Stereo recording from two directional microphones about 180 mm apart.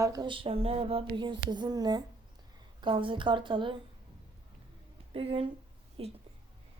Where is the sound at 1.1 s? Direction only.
25° right (ahead or behind).